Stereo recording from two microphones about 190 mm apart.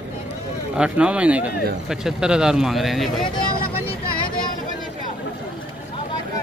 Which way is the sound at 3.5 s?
50° left (ahead or behind).